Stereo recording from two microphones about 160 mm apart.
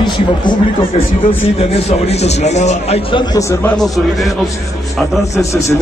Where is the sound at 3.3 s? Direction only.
20° left (ahead or behind).